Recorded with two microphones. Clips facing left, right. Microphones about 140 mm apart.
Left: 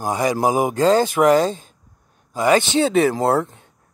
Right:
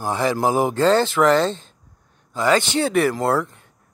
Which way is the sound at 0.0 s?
15° left (ahead or behind).